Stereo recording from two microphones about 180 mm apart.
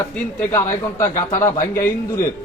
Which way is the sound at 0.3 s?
15° left (ahead or behind).